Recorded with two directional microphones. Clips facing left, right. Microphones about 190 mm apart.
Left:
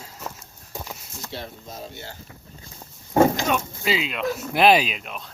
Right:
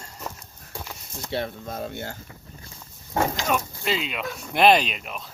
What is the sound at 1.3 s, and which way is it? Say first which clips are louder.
Speech: right 8 dB; 60° right (ahead or behind).